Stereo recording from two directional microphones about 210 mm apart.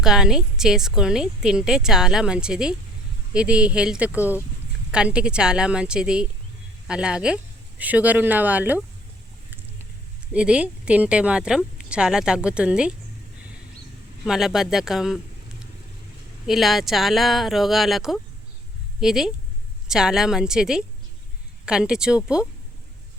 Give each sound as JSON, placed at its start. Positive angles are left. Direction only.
{"t": 0.0, "sound": "a woman's voice", "side_deg": -5}
{"t": 10.3, "sound": "a woman's voice", "side_deg": -5}
{"t": 14.3, "sound": "a woman's voice", "side_deg": 0}
{"t": 16.5, "sound": "a woman's voice", "side_deg": 0}